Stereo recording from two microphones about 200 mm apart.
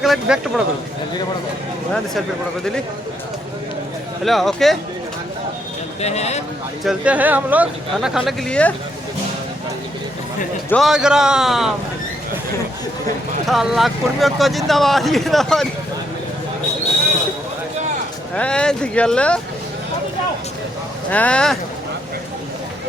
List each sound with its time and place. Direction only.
0.0 s speech: centre (ahead or behind)
4.2 s speech: centre (ahead or behind)
6.0 s speech: 35° left (ahead or behind)
6.8 s speech: 5° right (ahead or behind)
10.7 s speech: centre (ahead or behind)
13.5 s speech: centre (ahead or behind)
18.3 s speech: 5° left (ahead or behind)
21.1 s speech: 5° left (ahead or behind)